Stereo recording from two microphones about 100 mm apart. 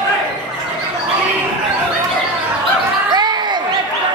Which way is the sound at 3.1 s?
45° right (ahead or behind).